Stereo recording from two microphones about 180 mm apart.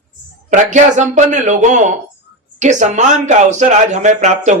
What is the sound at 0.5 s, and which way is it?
Speech, 40° right (ahead or behind).